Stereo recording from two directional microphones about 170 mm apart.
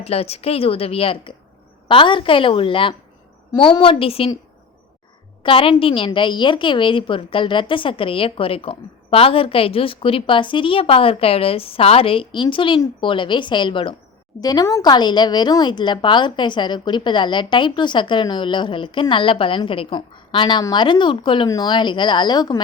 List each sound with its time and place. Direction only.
0.0 s a woman's voice: 35° left (ahead or behind)
5.4 s a woman's voice: 30° left (ahead or behind)